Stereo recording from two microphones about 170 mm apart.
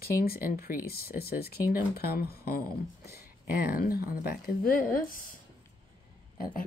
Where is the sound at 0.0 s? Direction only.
65° left (ahead or behind).